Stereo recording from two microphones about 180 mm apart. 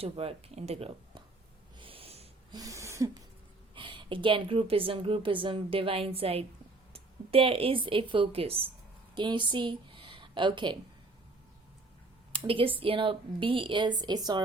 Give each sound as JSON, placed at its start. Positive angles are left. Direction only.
{"t": 0.0, "sound": "speech", "side_deg": -35}
{"t": 1.8, "sound": "wheeze", "side_deg": -30}
{"t": 2.6, "sound": "a sound", "side_deg": -15}
{"t": 3.8, "sound": "a woman's voice", "side_deg": -30}
{"t": 12.5, "sound": "a woman's voice", "side_deg": -30}